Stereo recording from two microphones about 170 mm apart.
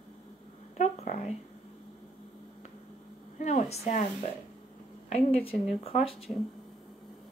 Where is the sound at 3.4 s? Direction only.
40° left (ahead or behind).